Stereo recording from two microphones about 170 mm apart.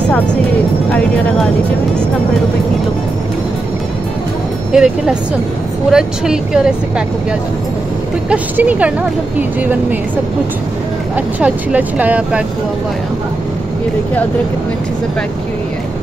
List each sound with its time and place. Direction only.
0.9 s speech: 5° left (ahead or behind)
4.7 s speech: 5° right (ahead or behind)
8.3 s speech: 10° right (ahead or behind)
11.1 s speech: 10° right (ahead or behind)